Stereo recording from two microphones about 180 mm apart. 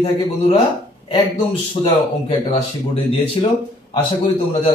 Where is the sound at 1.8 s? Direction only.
35° left (ahead or behind).